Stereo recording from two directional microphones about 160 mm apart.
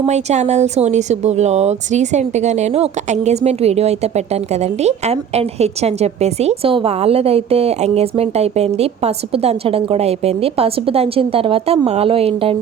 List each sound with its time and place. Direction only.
0.0 s a woman's voice: 45° right (ahead or behind)